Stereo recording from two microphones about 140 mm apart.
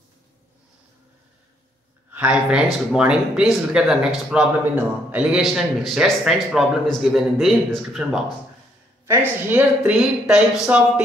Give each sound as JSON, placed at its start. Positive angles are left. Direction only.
{"t": 2.1, "sound": "speech", "side_deg": -10}
{"t": 9.5, "sound": "speech", "side_deg": -10}